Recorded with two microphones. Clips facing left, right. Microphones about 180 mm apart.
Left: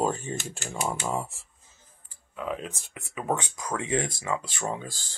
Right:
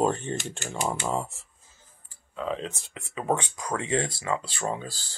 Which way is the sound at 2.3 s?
10° left (ahead or behind).